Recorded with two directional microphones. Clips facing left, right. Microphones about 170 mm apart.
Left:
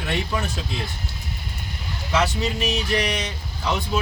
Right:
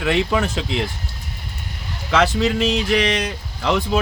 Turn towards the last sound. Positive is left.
turn(degrees=-90)